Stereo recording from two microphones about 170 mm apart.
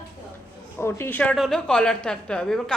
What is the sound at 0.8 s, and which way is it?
A woman's voice, 15° left (ahead or behind).